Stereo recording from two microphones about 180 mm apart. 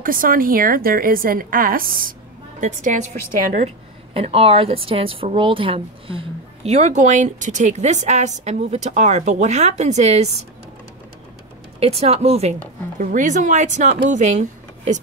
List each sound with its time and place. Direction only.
0.0 s a woman's voice: 50° right (ahead or behind)
3.6 s a woman's voice: 35° right (ahead or behind)
11.8 s a woman's voice: 35° right (ahead or behind)